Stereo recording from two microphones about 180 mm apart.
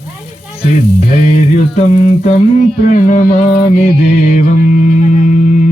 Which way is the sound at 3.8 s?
40° left (ahead or behind).